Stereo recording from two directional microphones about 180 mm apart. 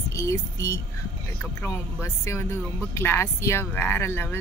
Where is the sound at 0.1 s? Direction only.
15° left (ahead or behind).